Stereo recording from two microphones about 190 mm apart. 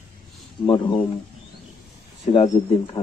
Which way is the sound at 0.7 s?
25° left (ahead or behind).